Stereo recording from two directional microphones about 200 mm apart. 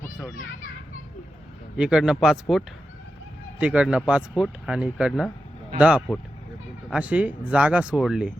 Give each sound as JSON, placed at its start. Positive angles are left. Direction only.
{"t": 1.7, "sound": "speech", "side_deg": -5}